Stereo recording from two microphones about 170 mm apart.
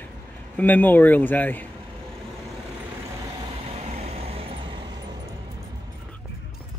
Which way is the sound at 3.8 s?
40° right (ahead or behind).